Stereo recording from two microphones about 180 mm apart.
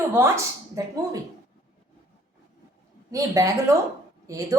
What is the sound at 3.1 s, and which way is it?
Speech, 20° right (ahead or behind).